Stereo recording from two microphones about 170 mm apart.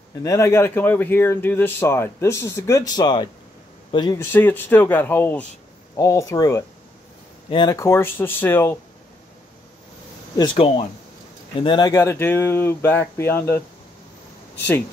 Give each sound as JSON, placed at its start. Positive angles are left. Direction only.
{"t": 0.2, "sound": "speech", "side_deg": 20}
{"t": 4.3, "sound": "speech", "side_deg": 10}
{"t": 10.3, "sound": "speech", "side_deg": 25}